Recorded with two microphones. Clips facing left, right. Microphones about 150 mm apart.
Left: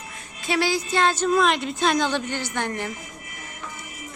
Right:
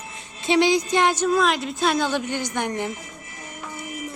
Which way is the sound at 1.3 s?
Centre (ahead or behind).